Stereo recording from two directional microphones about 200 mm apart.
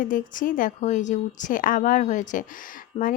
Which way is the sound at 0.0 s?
45° left (ahead or behind).